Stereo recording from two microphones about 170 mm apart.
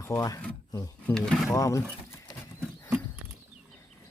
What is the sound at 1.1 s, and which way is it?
Speech, 5° left (ahead or behind).